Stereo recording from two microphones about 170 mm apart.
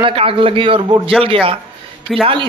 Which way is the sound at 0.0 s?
30° right (ahead or behind).